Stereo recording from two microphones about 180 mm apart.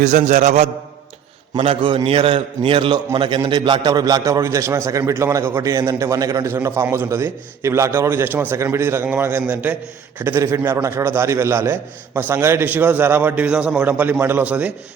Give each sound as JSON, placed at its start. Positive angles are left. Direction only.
{"t": 0.0, "sound": "a man's voice", "side_deg": -45}